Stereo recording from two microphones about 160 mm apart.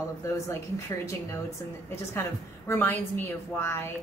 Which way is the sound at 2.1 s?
15° left (ahead or behind).